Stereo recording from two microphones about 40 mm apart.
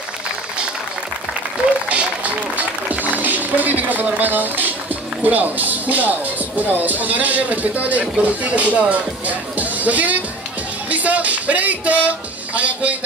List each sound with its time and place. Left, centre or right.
1.9 s music: right
5.2 s speech: right
10.9 s music: right